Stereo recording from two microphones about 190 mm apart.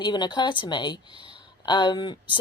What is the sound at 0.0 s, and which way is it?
A woman's voice, 25° left (ahead or behind).